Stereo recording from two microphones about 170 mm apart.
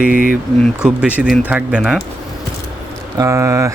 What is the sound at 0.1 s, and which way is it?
Speech, 55° left (ahead or behind).